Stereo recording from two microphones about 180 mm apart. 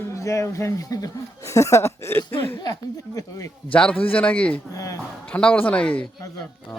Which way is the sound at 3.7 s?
10° left (ahead or behind).